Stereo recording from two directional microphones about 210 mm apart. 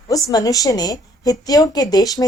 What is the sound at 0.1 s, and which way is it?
A woman's voice, 15° left (ahead or behind).